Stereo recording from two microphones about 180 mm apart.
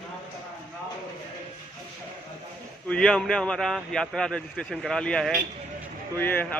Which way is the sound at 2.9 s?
5° left (ahead or behind).